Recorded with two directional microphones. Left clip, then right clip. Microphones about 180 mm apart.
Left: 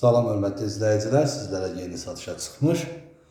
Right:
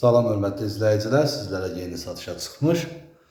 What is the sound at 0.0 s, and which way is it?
Speech, centre (ahead or behind).